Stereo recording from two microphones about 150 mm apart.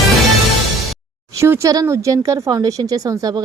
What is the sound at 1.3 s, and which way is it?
Speech, 20° right (ahead or behind).